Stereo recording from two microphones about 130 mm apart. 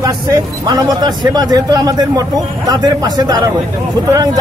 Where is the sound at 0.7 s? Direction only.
30° right (ahead or behind).